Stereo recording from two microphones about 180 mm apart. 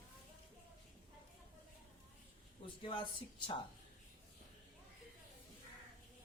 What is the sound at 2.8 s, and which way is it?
Speech, 25° left (ahead or behind).